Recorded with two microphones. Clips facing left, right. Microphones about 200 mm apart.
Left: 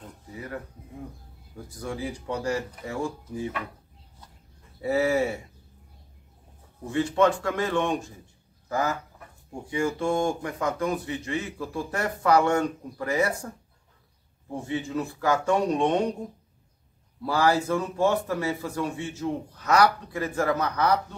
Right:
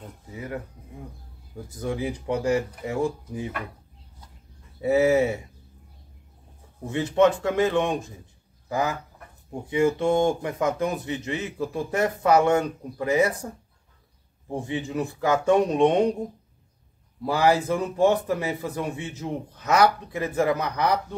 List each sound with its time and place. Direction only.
1.8 s a man's voice: 20° right (ahead or behind)
4.8 s a man's voice: 20° right (ahead or behind)
6.9 s a man's voice: 20° right (ahead or behind)
14.5 s a man's voice: 15° right (ahead or behind)
17.2 s a man's voice: 20° right (ahead or behind)